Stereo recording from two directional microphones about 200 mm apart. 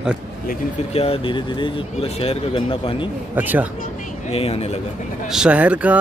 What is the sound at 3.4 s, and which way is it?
Speech, 10° right (ahead or behind).